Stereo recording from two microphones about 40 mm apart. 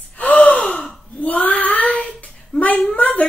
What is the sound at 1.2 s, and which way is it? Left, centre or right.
A child's voice, left.